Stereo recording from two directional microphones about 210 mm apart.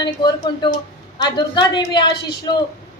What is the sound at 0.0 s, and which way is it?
A woman's voice, 20° left (ahead or behind).